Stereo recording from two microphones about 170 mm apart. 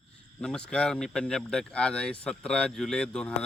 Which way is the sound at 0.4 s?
5° left (ahead or behind).